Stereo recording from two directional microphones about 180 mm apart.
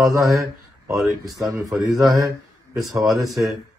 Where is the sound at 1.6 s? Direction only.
20° right (ahead or behind).